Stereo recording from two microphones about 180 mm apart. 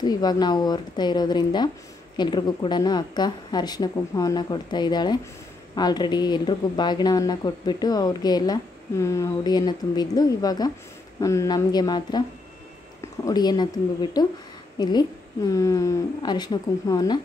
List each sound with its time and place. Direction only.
0.0 s speech: 25° left (ahead or behind)